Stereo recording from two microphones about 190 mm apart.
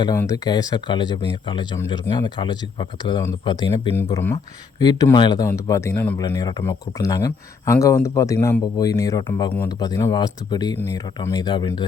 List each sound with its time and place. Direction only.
0.0 s speech: 15° left (ahead or behind)
3.9 s speech: 10° left (ahead or behind)